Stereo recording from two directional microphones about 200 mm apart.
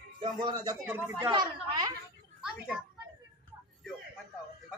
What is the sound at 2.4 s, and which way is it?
Speech, 5° right (ahead or behind).